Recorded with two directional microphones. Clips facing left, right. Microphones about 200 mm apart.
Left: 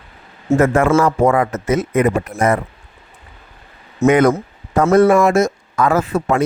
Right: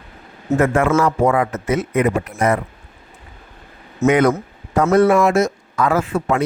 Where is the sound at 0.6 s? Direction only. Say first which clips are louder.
Left 2 dB; 45° left (ahead or behind).